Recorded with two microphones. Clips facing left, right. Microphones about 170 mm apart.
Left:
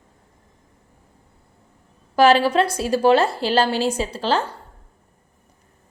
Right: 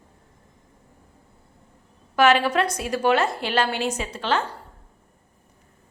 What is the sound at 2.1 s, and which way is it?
A woman's voice, 30° left (ahead or behind).